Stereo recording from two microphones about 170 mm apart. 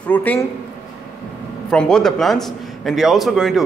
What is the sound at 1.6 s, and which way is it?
A man's voice, 5° left (ahead or behind).